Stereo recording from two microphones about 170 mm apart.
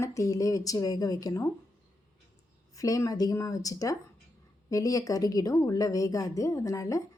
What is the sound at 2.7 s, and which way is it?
A woman's voice, 20° left (ahead or behind).